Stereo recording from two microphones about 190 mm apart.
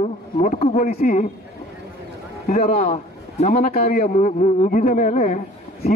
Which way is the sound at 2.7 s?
35° left (ahead or behind).